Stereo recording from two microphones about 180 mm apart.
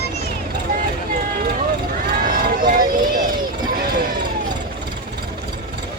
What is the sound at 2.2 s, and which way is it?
Run, 50° right (ahead or behind).